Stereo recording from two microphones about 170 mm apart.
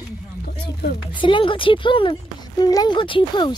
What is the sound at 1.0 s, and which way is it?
Speech, 30° left (ahead or behind).